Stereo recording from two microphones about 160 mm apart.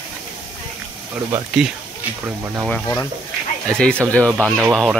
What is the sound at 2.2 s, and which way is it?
Speech, 15° right (ahead or behind).